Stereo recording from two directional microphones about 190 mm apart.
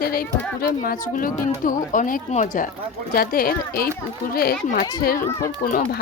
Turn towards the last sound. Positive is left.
turn(degrees=45)  # may be behind; listen again after turning